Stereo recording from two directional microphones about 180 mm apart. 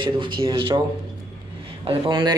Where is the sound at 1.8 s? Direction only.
30° right (ahead or behind).